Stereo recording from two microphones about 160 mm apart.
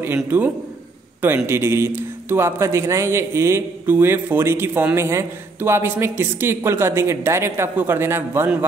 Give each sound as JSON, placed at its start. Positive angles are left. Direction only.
{"t": 0.0, "sound": "a man's voice", "side_deg": -15}